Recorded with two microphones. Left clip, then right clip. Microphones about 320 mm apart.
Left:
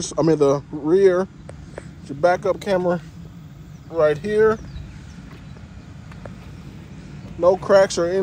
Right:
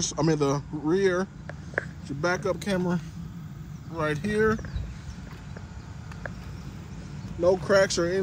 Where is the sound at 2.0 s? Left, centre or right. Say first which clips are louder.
Left 11 dB; centre.